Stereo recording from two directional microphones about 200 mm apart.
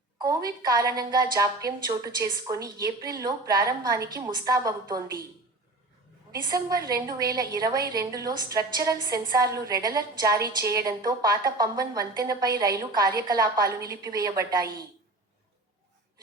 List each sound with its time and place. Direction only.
0.2 s a woman's voice: 20° right (ahead or behind)
6.4 s a woman's voice: 20° right (ahead or behind)